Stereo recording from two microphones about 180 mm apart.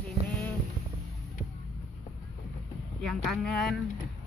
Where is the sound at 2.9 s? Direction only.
5° left (ahead or behind).